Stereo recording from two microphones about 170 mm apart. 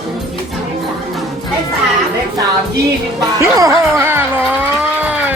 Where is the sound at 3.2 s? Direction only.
20° right (ahead or behind).